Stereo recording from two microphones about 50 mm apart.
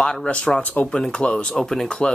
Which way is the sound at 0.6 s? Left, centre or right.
Left.